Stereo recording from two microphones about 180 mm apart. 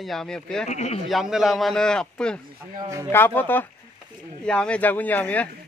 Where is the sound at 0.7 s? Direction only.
35° left (ahead or behind).